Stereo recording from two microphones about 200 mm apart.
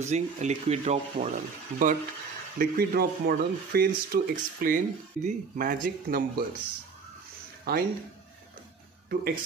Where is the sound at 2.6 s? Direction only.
50° right (ahead or behind).